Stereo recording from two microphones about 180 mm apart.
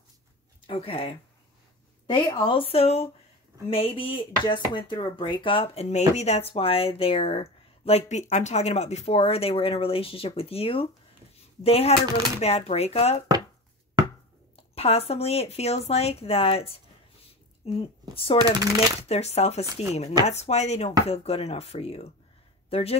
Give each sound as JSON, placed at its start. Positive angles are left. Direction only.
{"t": 0.7, "sound": "speech", "side_deg": 30}
{"t": 14.8, "sound": "speech", "side_deg": 35}
{"t": 17.2, "sound": "a sound", "side_deg": 30}
{"t": 18.1, "sound": "speech", "side_deg": 30}
{"t": 19.6, "sound": "speech", "side_deg": -20}
{"t": 20.2, "sound": "speech", "side_deg": 40}